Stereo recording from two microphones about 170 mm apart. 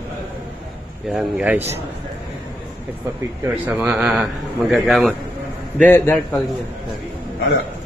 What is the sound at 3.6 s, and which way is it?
A man's voice, 10° right (ahead or behind).